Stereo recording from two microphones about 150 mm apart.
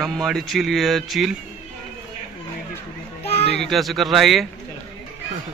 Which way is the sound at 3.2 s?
45° left (ahead or behind).